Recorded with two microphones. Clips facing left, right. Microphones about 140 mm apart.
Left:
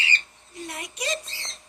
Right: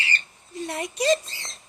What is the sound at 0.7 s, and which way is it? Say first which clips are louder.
Speech: right 9 dB; 35° right (ahead or behind).